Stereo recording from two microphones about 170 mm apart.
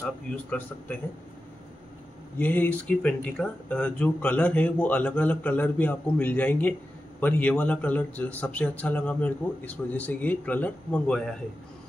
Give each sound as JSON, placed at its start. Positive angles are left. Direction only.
{"t": 0.0, "sound": "speech", "side_deg": 10}
{"t": 2.3, "sound": "speech", "side_deg": 10}